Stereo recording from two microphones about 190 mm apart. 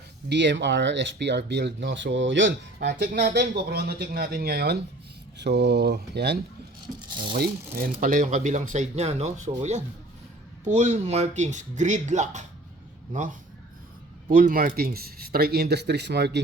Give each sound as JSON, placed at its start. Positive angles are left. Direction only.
{"t": 0.3, "sound": "speech", "side_deg": -65}
{"t": 14.3, "sound": "speech", "side_deg": -45}